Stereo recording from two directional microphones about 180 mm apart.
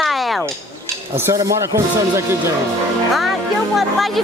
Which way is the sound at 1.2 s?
15° right (ahead or behind).